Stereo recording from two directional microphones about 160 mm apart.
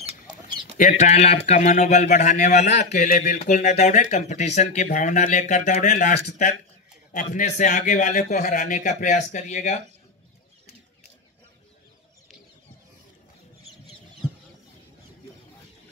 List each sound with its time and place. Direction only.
0.7 s speech: 50° left (ahead or behind)